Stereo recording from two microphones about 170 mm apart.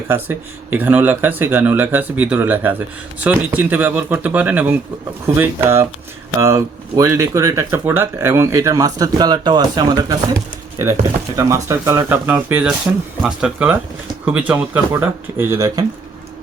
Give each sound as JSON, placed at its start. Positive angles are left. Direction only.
{"t": 0.1, "sound": "speech", "side_deg": -10}